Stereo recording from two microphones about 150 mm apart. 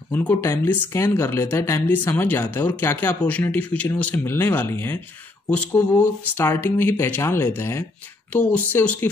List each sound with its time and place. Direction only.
0.1 s speech: 15° left (ahead or behind)